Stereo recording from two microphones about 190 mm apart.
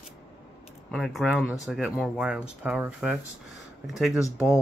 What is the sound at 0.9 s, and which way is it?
Speech, centre (ahead or behind).